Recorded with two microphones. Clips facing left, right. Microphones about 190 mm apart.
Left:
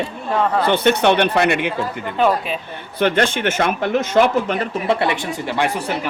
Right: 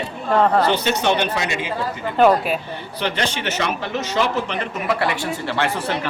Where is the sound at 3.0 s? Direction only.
50° left (ahead or behind).